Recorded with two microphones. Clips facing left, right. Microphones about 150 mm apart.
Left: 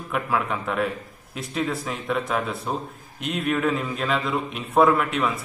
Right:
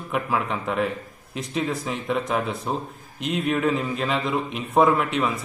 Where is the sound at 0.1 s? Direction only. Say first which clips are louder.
Even; centre (ahead or behind).